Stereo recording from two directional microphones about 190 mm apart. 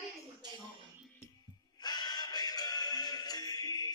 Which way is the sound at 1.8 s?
20° left (ahead or behind).